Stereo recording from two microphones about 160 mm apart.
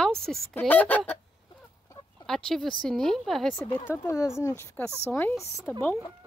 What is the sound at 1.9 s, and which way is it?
Fowl, 20° left (ahead or behind).